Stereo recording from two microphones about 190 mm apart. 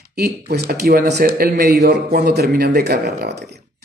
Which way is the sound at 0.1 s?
55° right (ahead or behind).